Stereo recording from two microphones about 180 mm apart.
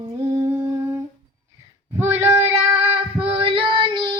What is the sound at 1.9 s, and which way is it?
Child singing, 15° right (ahead or behind).